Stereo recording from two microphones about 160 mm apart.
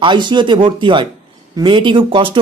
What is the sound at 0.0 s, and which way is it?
Speech, 30° right (ahead or behind).